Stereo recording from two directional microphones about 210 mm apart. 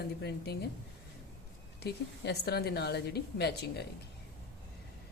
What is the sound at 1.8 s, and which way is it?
A woman's voice, 50° left (ahead or behind).